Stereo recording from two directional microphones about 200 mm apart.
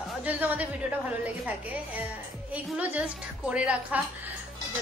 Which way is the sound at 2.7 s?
5° right (ahead or behind).